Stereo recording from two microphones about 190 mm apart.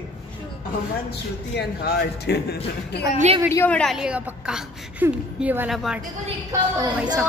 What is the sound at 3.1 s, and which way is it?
Speech, 35° right (ahead or behind).